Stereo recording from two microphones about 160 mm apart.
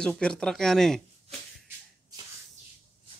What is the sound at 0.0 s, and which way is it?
Speech, 5° left (ahead or behind).